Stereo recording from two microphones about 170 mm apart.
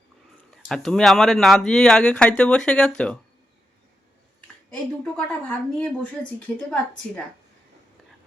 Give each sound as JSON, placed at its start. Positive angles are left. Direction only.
{"t": 0.5, "sound": "speech", "side_deg": 0}
{"t": 4.4, "sound": "speech", "side_deg": 5}